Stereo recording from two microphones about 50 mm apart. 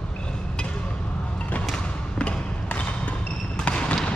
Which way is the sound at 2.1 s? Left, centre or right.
Left.